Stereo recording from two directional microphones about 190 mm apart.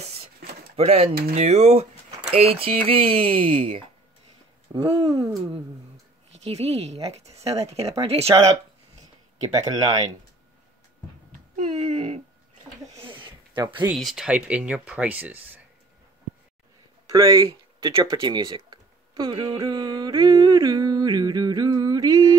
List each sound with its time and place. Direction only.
0.7 s speech: 30° right (ahead or behind)
11.5 s speech: 35° right (ahead or behind)
13.0 s a sound: 25° right (ahead or behind)
13.9 s speech: centre (ahead or behind)
17.1 s speech: 15° right (ahead or behind)